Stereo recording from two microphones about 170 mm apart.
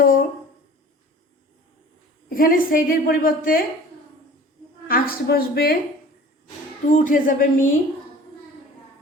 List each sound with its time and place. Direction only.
0.0 s a sound: 55° left (ahead or behind)
2.3 s a woman's voice: 55° left (ahead or behind)
4.9 s a woman's voice: 60° left (ahead or behind)
6.9 s a woman's voice: 50° left (ahead or behind)